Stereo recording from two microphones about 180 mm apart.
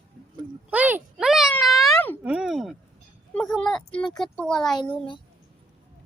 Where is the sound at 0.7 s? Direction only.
10° right (ahead or behind).